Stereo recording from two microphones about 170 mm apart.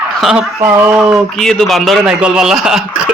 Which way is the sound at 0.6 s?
15° right (ahead or behind).